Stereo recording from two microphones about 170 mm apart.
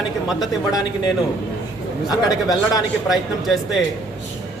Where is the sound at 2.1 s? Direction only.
20° left (ahead or behind).